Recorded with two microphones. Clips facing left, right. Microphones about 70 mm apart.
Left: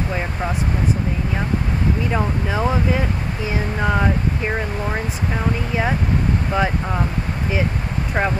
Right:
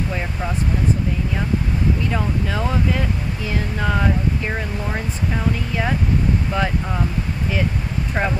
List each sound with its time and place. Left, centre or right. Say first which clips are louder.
2.1 s speech: left 2 dB; centre
8.2 s speech: left 2 dB; centre